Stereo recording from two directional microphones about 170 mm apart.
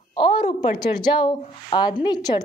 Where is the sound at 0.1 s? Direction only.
25° left (ahead or behind).